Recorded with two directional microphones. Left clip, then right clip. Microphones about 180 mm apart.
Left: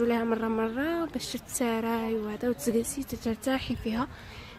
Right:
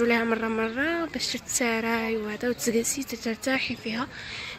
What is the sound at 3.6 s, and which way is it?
Speech, 30° left (ahead or behind).